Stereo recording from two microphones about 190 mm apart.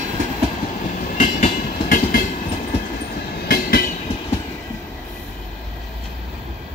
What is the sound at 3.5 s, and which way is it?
Train, 50° left (ahead or behind).